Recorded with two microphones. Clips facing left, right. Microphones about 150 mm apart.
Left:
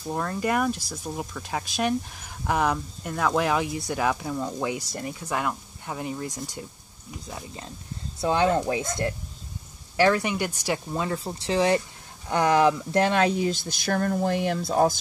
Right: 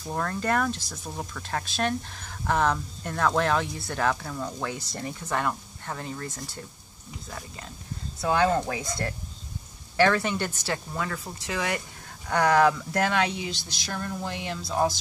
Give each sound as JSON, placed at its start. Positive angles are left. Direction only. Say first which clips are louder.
{"t": 0.1, "sound": "speech", "louder": "left 1 dB", "side_deg": 10}
{"t": 9.9, "sound": "speech", "louder": "left 1 dB", "side_deg": 15}